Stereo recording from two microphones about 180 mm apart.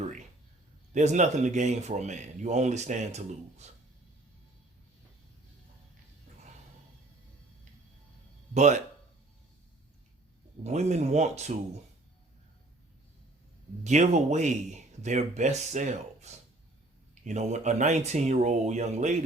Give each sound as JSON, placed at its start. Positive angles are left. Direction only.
{"t": 0.9, "sound": "speech", "side_deg": -40}
{"t": 8.5, "sound": "speech", "side_deg": -40}
{"t": 10.6, "sound": "speech", "side_deg": -40}
{"t": 13.8, "sound": "speech", "side_deg": -40}